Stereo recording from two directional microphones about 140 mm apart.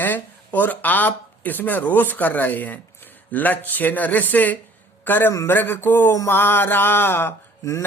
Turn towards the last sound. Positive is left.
turn(degrees=20)  # may be behind; listen again after turning